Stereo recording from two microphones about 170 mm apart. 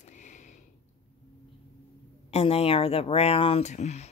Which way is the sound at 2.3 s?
35° left (ahead or behind).